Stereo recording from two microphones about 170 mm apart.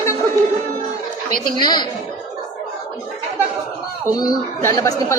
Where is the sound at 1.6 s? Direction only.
25° left (ahead or behind).